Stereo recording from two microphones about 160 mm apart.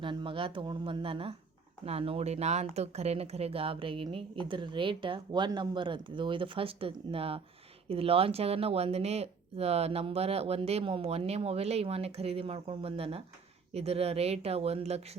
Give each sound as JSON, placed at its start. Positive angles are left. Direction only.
{"t": 0.0, "sound": "speech", "side_deg": -30}